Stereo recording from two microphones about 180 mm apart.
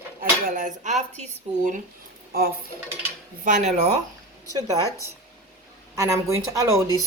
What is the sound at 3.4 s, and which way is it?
Music, 40° right (ahead or behind).